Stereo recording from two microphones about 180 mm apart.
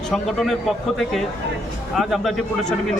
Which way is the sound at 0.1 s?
Centre (ahead or behind).